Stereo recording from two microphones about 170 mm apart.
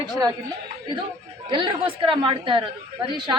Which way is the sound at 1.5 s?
30° right (ahead or behind).